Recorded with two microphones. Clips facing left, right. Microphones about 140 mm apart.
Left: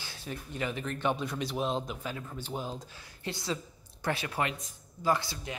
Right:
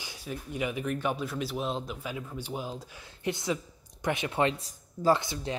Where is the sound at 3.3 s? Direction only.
20° right (ahead or behind).